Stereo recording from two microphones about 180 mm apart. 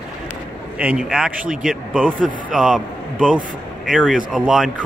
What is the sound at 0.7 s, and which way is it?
Speech, 5° right (ahead or behind).